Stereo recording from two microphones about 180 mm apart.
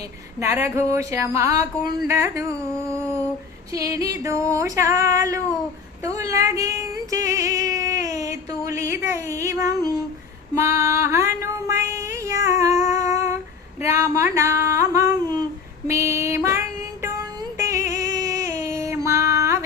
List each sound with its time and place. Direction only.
0.3 s music: 15° right (ahead or behind)
3.7 s music: 20° right (ahead or behind)
6.0 s female singing: 15° right (ahead or behind)
13.8 s a sound: 15° right (ahead or behind)